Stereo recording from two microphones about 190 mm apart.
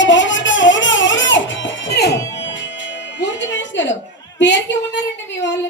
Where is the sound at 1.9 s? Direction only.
60° left (ahead or behind).